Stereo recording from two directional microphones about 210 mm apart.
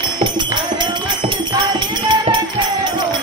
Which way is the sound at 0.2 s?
20° right (ahead or behind).